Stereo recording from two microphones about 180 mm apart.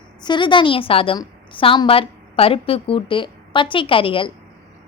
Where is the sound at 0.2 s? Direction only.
25° left (ahead or behind).